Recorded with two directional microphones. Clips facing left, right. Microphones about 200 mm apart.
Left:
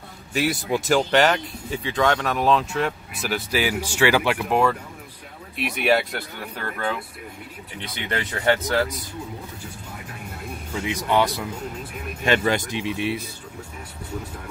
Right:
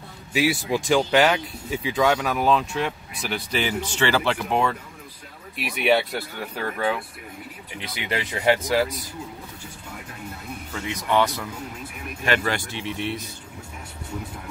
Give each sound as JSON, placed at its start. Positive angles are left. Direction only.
{"t": 0.3, "sound": "speech", "side_deg": 0}
{"t": 5.6, "sound": "speech", "side_deg": 0}
{"t": 8.3, "sound": "speech", "side_deg": -10}
{"t": 10.7, "sound": "speech", "side_deg": 10}